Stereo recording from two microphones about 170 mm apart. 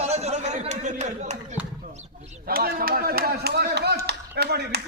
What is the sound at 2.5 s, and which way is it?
Speech, 60° right (ahead or behind).